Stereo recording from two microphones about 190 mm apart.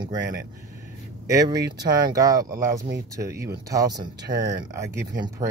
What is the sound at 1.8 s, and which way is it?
Speech, 20° right (ahead or behind).